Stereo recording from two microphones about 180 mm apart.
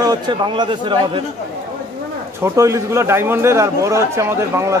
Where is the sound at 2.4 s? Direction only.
15° right (ahead or behind).